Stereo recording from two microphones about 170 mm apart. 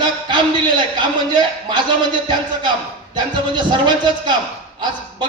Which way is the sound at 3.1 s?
25° right (ahead or behind).